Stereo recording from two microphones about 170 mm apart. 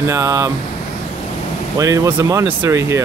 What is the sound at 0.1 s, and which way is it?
Speech, 20° right (ahead or behind).